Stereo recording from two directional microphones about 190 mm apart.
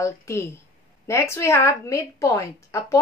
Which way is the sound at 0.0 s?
15° left (ahead or behind).